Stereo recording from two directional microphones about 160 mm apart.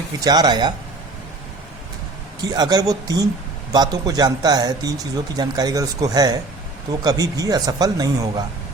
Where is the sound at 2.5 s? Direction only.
25° right (ahead or behind).